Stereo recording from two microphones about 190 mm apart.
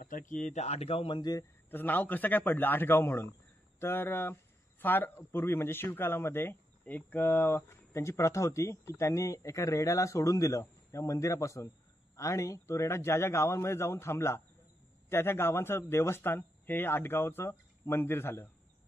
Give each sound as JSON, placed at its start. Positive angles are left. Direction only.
{"t": 0.0, "sound": "speech", "side_deg": 45}
{"t": 1.7, "sound": "a man's voice", "side_deg": 10}